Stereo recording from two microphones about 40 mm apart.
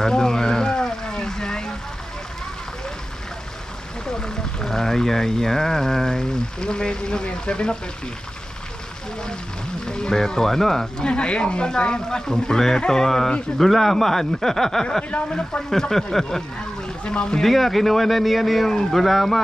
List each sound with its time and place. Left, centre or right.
0.0 s a sound: centre
4.0 s speech: centre
9.8 s speech: centre
11.0 s speech: left
15.0 s speech: left
15.7 s speech: centre
17.0 s speech: left
17.4 s speech: centre